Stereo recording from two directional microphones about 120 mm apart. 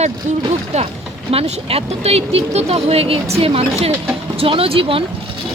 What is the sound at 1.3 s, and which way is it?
Speech, 55° right (ahead or behind).